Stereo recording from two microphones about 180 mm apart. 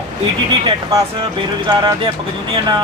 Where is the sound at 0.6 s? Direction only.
30° right (ahead or behind).